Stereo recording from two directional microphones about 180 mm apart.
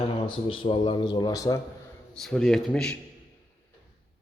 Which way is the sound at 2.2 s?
Centre (ahead or behind).